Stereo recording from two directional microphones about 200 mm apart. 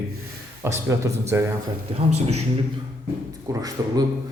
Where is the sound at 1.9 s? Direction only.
30° right (ahead or behind).